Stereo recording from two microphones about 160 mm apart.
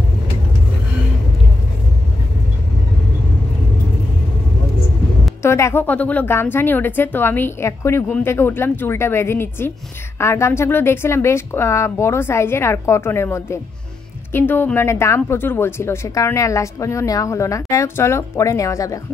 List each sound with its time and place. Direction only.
5.4 s a woman's voice: 15° left (ahead or behind)